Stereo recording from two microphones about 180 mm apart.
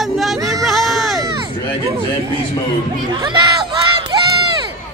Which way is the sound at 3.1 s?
25° right (ahead or behind).